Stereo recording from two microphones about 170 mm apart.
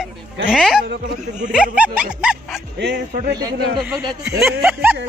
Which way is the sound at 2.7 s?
85° right.